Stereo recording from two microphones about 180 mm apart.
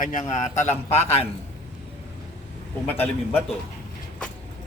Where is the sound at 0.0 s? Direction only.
45° left (ahead or behind).